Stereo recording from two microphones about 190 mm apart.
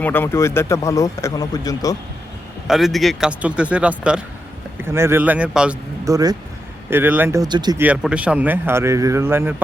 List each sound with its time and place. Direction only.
0.0 s speech: 10° left (ahead or behind)
2.6 s a man's voice: centre (ahead or behind)
6.1 s a man's voice: 20° right (ahead or behind)
7.8 s a man's voice: 5° right (ahead or behind)